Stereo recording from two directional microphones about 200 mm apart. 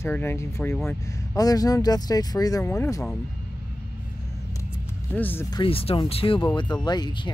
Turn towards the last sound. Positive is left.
turn(degrees=20)  # may be behind; listen again after turning